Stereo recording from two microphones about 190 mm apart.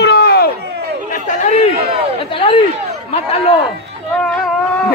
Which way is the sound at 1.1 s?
40° left (ahead or behind).